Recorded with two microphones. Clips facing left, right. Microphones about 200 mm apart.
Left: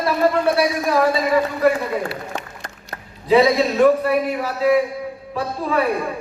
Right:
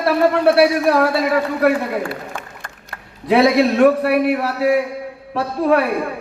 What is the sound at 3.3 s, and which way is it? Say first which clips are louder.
A man's voice: right 2 dB; 70° right (ahead or behind).